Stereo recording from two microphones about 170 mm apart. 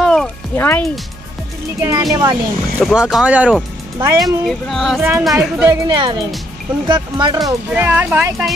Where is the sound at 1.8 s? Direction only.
20° right (ahead or behind).